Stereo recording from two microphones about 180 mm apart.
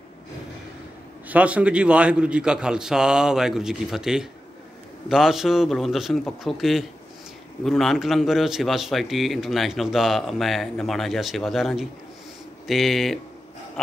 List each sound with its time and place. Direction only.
1.3 s a man's voice: 5° right (ahead or behind)